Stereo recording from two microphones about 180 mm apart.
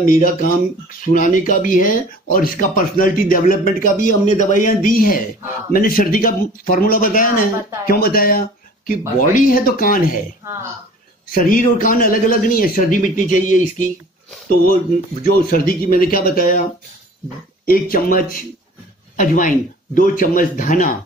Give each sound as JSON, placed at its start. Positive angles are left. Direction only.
{"t": 0.0, "sound": "speech", "side_deg": 50}
{"t": 11.3, "sound": "speech", "side_deg": 50}
{"t": 15.2, "sound": "speech", "side_deg": 50}
{"t": 17.6, "sound": "speech", "side_deg": 55}